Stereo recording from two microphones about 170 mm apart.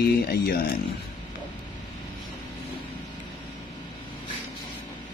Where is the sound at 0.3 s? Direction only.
65° left (ahead or behind).